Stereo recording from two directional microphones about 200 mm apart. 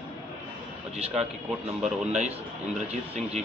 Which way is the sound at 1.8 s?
35° right (ahead or behind).